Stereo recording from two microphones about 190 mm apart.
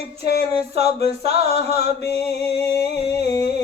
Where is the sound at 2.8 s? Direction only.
35° right (ahead or behind).